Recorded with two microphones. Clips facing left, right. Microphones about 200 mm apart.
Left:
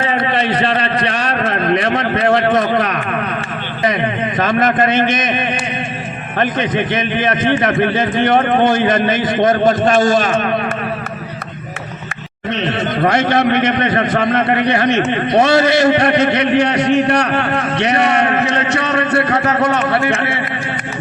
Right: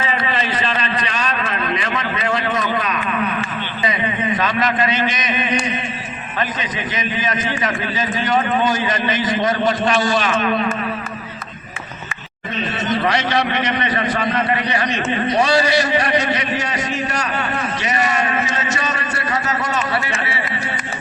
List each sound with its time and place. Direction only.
0.0 s a sound: 55° left (ahead or behind)
4.4 s a man's voice: 50° left (ahead or behind)
12.5 s a man's voice: 65° left (ahead or behind)